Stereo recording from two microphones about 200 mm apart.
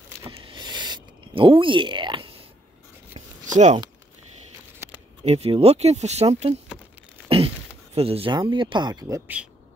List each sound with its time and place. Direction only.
0.3 s a sound: 25° right (ahead or behind)
3.5 s speech: 35° right (ahead or behind)
5.2 s speech: 30° right (ahead or behind)